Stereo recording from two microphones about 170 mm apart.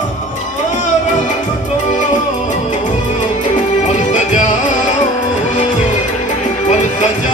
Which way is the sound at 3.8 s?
45° left (ahead or behind).